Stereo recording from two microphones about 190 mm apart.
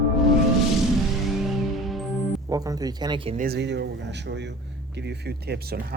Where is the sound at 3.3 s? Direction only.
55° right (ahead or behind).